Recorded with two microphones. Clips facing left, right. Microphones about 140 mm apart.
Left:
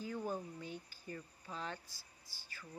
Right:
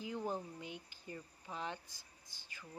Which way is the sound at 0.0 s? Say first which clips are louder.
Even; 20° right (ahead or behind).